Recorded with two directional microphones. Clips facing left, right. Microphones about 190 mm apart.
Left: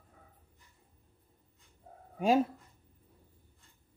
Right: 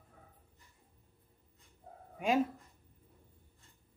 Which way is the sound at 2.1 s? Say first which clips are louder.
Left 4 dB; 35° left (ahead or behind).